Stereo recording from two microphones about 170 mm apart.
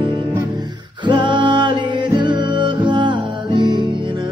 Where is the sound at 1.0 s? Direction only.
30° right (ahead or behind).